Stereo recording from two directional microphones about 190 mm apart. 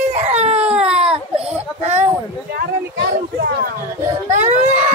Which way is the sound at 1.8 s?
35° right (ahead or behind).